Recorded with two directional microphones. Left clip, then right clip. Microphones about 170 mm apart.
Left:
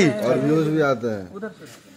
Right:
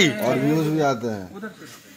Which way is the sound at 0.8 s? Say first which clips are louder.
Left 2 dB; 20° right (ahead or behind).